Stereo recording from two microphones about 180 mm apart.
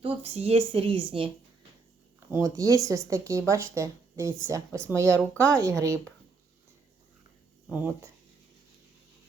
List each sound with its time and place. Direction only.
0.0 s a woman's voice: 35° right (ahead or behind)
2.3 s speech: 20° right (ahead or behind)
5.1 s speech: 5° left (ahead or behind)
5.6 s speech: 15° right (ahead or behind)